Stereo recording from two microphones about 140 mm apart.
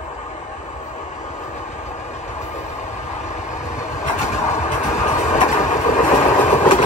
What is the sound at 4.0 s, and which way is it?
Vehicle, 60° left (ahead or behind).